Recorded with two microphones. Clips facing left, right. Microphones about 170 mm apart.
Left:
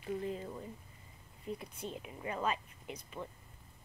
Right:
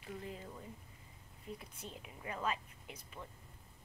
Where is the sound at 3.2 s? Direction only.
25° left (ahead or behind).